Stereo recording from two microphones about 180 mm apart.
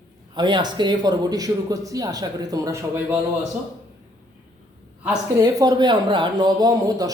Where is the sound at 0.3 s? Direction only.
25° right (ahead or behind).